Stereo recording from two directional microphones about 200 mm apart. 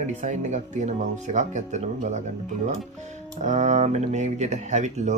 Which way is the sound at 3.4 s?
35° right (ahead or behind).